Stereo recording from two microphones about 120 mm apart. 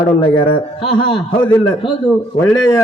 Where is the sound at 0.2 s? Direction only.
45° left (ahead or behind).